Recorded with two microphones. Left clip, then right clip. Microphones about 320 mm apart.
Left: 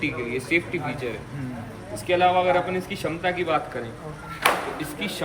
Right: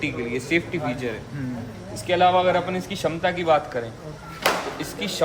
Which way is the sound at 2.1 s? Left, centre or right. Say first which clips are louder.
Right 1 dB; right.